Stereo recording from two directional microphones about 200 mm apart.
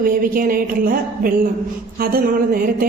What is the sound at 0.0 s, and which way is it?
Speech, 45° right (ahead or behind).